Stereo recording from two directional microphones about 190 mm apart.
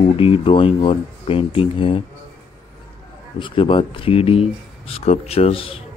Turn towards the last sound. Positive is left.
turn(degrees=30)  # may be behind; listen again after turning